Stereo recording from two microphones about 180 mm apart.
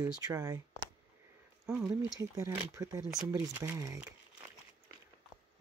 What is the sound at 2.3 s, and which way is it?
Speech, 15° right (ahead or behind).